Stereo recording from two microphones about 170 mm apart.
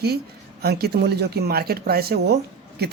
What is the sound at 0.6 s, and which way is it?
Speech, 70° right (ahead or behind).